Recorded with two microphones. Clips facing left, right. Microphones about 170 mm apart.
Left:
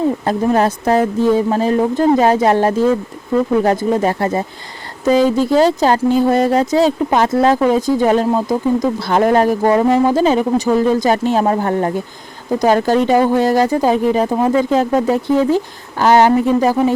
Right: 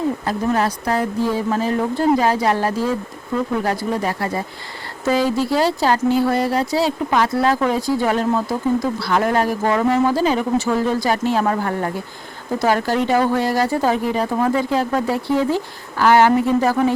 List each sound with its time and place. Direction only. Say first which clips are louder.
0.3 s speech: left 6 dB; 25° left (ahead or behind)